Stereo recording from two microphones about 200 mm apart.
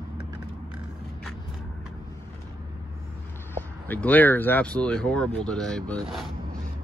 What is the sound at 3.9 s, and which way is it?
Speech, 10° left (ahead or behind).